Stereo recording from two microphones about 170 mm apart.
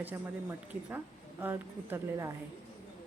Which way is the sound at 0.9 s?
10° right (ahead or behind).